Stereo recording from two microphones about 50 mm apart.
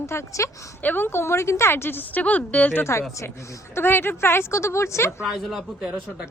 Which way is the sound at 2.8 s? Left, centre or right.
Left.